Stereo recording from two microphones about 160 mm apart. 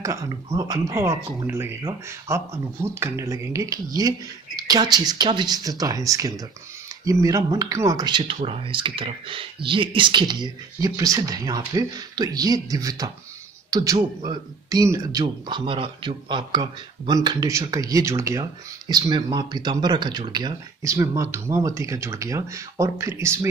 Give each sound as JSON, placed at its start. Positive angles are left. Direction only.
{"t": 0.0, "sound": "a man's voice", "side_deg": -20}
{"t": 8.2, "sound": "a man's voice", "side_deg": -40}